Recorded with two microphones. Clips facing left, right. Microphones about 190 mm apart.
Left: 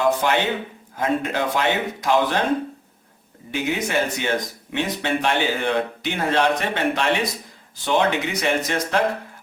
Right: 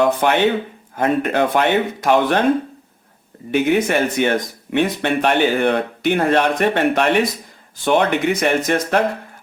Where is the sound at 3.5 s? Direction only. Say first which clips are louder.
Right 8 dB; 60° right (ahead or behind).